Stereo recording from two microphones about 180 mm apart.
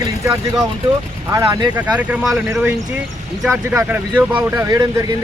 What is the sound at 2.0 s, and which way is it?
Speech, 5° right (ahead or behind).